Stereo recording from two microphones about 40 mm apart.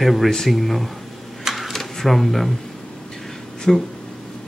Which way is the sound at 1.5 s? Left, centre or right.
Centre.